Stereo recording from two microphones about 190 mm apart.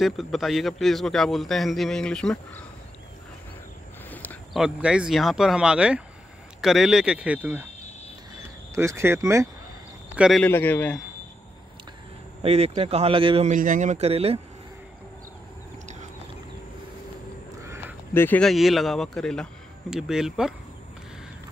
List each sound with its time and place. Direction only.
0.0 s a man's voice: centre (ahead or behind)
4.1 s a sound: 10° left (ahead or behind)
4.6 s a man's voice: 5° right (ahead or behind)
8.7 s speech: 15° right (ahead or behind)
10.1 s a man's voice: 5° right (ahead or behind)
10.4 s a man's voice: 10° left (ahead or behind)
12.4 s speech: 35° right (ahead or behind)
13.5 s speech: 40° right (ahead or behind)
18.1 s a man's voice: 10° left (ahead or behind)